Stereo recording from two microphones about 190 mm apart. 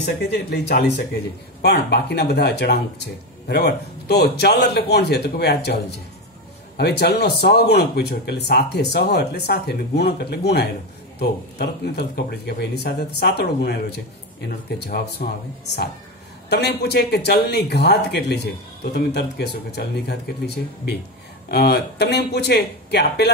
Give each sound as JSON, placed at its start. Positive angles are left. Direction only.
{"t": 0.0, "sound": "speech", "side_deg": 60}
{"t": 16.4, "sound": "speech", "side_deg": 60}